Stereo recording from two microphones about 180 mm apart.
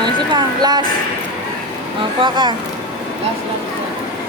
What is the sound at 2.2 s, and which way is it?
Speech, 25° right (ahead or behind).